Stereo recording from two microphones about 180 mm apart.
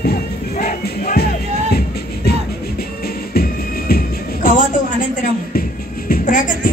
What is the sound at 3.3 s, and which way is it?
Music, 60° left (ahead or behind).